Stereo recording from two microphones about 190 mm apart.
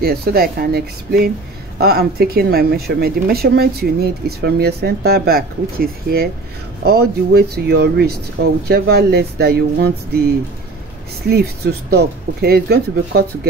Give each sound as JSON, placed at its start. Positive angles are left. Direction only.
{"t": 0.0, "sound": "speech", "side_deg": -50}